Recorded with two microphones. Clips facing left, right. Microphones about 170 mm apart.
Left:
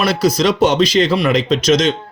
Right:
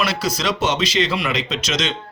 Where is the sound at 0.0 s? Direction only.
45° left (ahead or behind).